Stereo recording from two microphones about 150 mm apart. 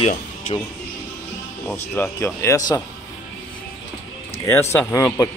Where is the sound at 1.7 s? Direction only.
15° left (ahead or behind).